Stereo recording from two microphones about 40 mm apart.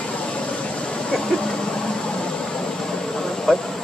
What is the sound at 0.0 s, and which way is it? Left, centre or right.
Vehicle, left.